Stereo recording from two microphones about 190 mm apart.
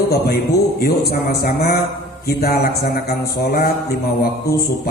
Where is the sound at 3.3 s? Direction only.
50° left (ahead or behind).